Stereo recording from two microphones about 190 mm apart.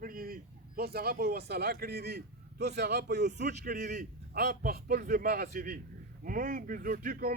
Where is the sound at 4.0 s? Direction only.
45° right (ahead or behind).